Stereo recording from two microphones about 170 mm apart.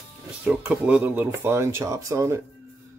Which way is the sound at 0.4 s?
10° right (ahead or behind).